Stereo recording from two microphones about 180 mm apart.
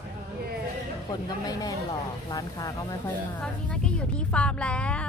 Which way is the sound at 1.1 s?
20° left (ahead or behind).